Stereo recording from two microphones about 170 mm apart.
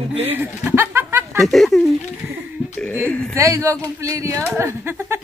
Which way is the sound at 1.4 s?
Centre (ahead or behind).